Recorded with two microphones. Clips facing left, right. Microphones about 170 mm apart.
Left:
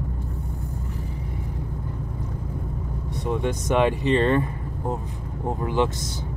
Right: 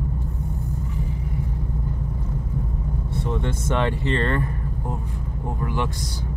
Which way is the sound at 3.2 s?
15° left (ahead or behind).